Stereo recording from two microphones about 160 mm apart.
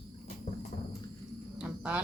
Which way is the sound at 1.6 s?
5° right (ahead or behind).